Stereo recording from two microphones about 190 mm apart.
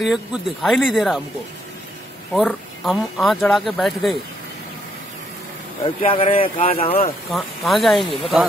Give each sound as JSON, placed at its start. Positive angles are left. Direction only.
{"t": 0.0, "sound": "speech", "side_deg": 0}
{"t": 2.3, "sound": "speech", "side_deg": 0}
{"t": 5.9, "sound": "speech", "side_deg": 30}
{"t": 7.2, "sound": "speech", "side_deg": 0}